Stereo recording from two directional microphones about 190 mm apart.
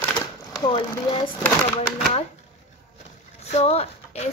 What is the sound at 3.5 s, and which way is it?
Speech, 35° left (ahead or behind).